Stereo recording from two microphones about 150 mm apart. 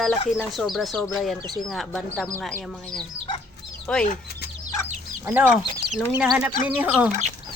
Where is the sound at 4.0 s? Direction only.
65° left (ahead or behind).